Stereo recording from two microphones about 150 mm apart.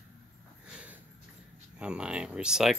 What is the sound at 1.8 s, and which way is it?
Speech, 5° right (ahead or behind).